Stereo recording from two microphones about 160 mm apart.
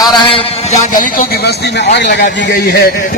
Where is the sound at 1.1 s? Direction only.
80° left.